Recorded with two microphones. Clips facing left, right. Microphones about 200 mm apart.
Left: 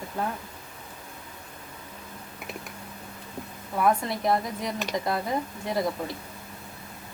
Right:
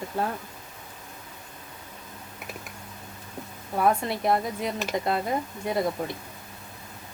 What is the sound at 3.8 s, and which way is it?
Speech, 25° right (ahead or behind).